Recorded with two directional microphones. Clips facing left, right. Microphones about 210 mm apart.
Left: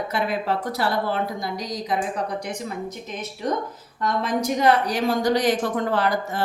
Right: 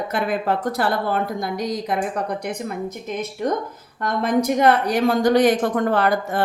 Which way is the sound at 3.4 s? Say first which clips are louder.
Right 1 dB; 50° right (ahead or behind).